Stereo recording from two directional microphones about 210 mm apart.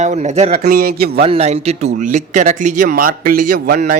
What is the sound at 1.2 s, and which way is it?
Speech, 30° right (ahead or behind).